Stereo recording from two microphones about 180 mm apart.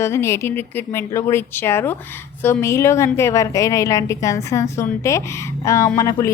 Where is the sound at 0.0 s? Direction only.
15° left (ahead or behind).